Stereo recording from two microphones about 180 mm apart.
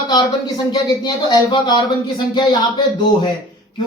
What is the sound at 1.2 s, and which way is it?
Speech, 25° left (ahead or behind).